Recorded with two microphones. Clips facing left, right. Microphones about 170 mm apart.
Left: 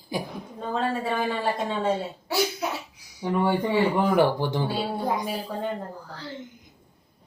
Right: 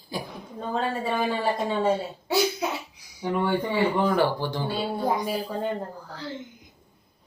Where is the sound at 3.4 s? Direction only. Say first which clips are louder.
Left 2 dB; 10° left (ahead or behind).